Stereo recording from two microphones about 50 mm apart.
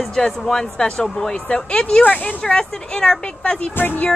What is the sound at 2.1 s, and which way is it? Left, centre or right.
Speech, left.